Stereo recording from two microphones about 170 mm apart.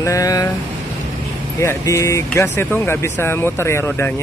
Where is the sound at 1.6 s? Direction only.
15° left (ahead or behind).